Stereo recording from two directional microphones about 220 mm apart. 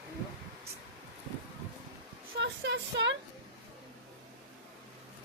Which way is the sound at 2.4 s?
50° right (ahead or behind).